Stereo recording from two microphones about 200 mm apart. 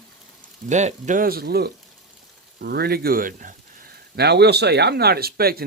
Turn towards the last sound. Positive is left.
turn(degrees=-50)  # may be behind; listen again after turning